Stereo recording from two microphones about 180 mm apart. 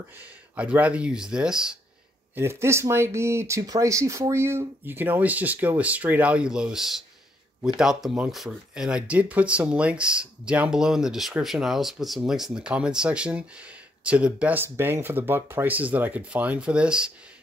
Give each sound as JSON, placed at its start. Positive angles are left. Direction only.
{"t": 0.2, "sound": "speech", "side_deg": -10}
{"t": 2.3, "sound": "speech", "side_deg": -15}